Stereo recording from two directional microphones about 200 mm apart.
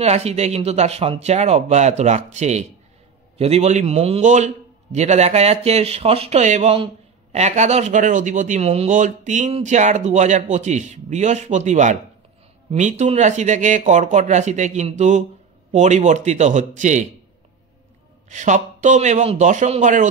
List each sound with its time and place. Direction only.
0.0 s speech: 30° right (ahead or behind)
18.3 s speech: 40° right (ahead or behind)